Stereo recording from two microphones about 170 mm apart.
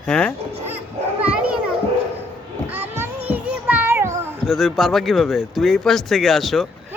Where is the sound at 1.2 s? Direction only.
5° right (ahead or behind).